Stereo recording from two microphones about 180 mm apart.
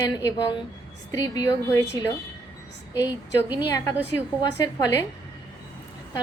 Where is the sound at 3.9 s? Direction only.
10° right (ahead or behind).